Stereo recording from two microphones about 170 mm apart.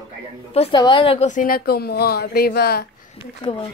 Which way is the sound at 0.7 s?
30° left (ahead or behind).